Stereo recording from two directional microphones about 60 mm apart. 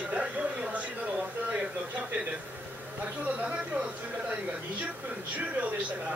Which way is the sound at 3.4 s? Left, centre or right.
Centre.